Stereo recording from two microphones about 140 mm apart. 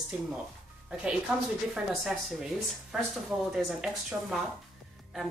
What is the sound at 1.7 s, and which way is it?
Speech, centre (ahead or behind).